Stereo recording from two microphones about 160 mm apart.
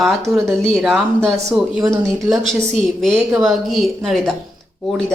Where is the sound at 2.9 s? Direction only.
Centre (ahead or behind).